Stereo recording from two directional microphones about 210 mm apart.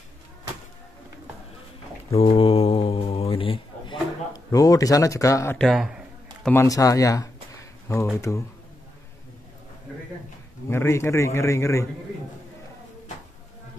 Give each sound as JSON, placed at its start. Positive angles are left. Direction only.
{"t": 2.1, "sound": "mantra", "side_deg": 25}
{"t": 5.7, "sound": "a sound", "side_deg": 0}
{"t": 6.5, "sound": "a man's voice", "side_deg": 15}
{"t": 10.7, "sound": "a man's voice", "side_deg": 10}